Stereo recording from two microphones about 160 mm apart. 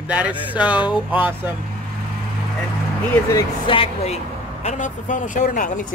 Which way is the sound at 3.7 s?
35° left (ahead or behind).